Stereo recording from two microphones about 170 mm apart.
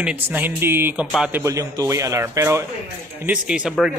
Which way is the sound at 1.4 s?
20° right (ahead or behind).